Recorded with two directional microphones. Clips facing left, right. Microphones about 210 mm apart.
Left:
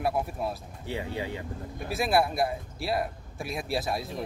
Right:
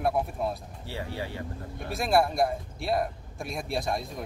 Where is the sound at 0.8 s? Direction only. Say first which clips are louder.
Left 3 dB; 20° left (ahead or behind).